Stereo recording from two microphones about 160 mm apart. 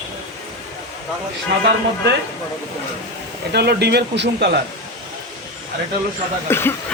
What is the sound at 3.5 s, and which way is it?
Speech, 90° right.